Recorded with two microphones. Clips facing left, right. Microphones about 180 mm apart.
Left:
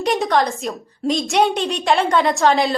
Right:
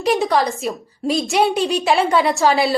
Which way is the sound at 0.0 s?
Centre (ahead or behind).